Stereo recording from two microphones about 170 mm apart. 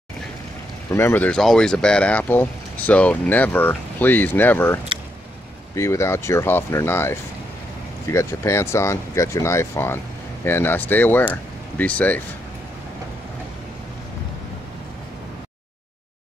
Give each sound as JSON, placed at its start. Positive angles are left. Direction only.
{"t": 0.9, "sound": "speech", "side_deg": 10}
{"t": 5.8, "sound": "speech", "side_deg": 15}